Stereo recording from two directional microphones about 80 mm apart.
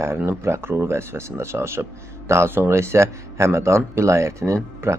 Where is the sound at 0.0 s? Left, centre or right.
Right.